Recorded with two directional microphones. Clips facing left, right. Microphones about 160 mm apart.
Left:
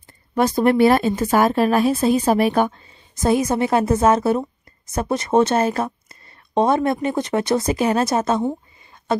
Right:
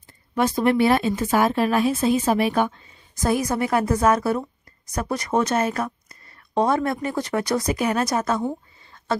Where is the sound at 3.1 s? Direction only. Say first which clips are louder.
Left 4 dB; 25° left (ahead or behind).